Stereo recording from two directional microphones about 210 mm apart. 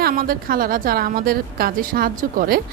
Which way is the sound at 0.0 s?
45° right (ahead or behind).